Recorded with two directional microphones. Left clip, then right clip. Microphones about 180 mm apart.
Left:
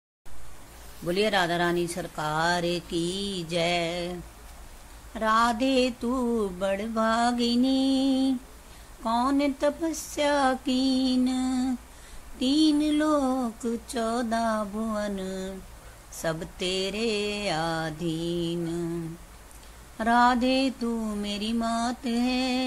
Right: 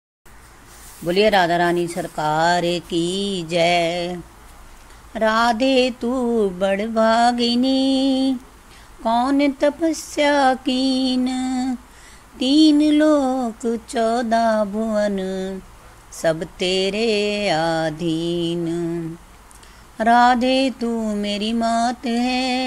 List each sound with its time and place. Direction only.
1.0 s speech: 25° right (ahead or behind)
20.0 s speech: 25° right (ahead or behind)